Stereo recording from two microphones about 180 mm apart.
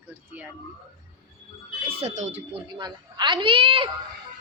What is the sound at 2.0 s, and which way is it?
Speech, 40° right (ahead or behind).